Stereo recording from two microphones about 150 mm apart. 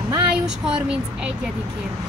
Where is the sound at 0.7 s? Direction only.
5° right (ahead or behind).